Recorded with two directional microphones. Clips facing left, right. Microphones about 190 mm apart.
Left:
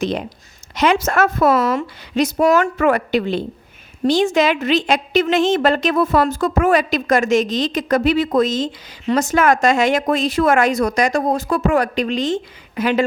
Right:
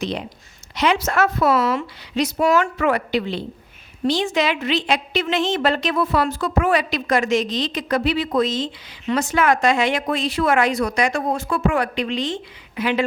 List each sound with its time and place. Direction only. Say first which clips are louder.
0.8 s a woman's voice: left 3 dB; 45° left (ahead or behind)